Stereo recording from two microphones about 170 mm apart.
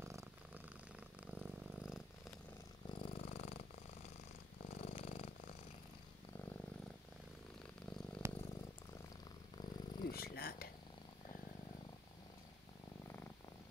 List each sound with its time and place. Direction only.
0.0 s purr: 15° right (ahead or behind)
2.9 s purr: 30° left (ahead or behind)
4.8 s purr: 40° left (ahead or behind)
8.2 s purr: 15° right (ahead or behind)
9.6 s purr: 25° left (ahead or behind)
10.0 s purr: 65° left (ahead or behind)